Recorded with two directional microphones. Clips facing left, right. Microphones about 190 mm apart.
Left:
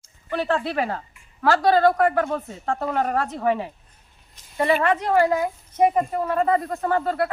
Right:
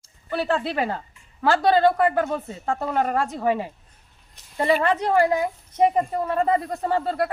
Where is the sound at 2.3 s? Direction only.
5° right (ahead or behind).